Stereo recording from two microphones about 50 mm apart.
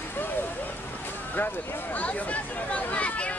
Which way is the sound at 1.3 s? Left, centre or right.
Left.